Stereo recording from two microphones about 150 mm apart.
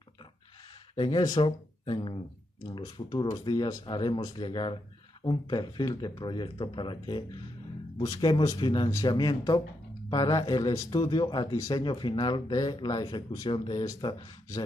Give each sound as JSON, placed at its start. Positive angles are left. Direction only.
{"t": 0.9, "sound": "speech", "side_deg": 30}